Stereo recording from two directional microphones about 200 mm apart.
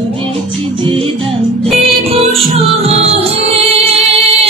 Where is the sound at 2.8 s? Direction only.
30° right (ahead or behind).